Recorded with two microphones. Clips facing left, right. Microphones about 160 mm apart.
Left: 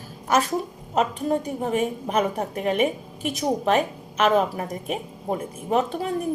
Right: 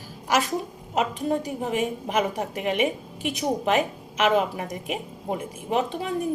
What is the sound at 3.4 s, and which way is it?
A woman's voice, 35° left (ahead or behind).